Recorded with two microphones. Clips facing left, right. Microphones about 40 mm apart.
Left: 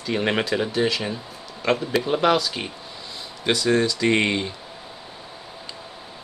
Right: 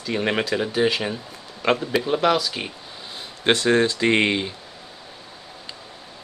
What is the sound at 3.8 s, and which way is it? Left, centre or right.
Speech, right.